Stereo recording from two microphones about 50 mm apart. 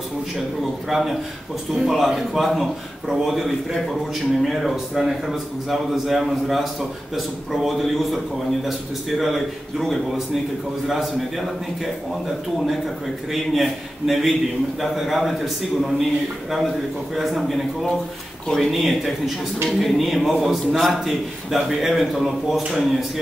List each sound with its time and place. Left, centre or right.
0.8 s a man's voice: centre
13.3 s a man's voice: centre